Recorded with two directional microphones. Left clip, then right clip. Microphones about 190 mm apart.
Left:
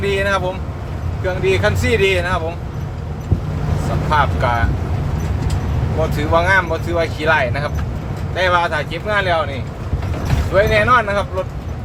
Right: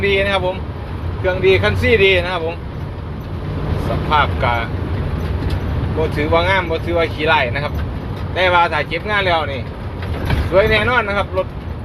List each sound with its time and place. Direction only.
0.0 s speech: 15° left (ahead or behind)
4.1 s speech: 15° left (ahead or behind)
6.0 s speech: 15° left (ahead or behind)
10.5 s speech: 10° left (ahead or behind)